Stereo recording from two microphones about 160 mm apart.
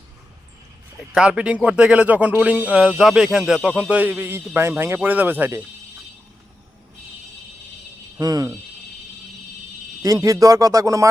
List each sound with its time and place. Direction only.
1.1 s speech: 5° right (ahead or behind)
8.2 s a man's voice: 20° right (ahead or behind)
10.0 s a man's voice: 20° right (ahead or behind)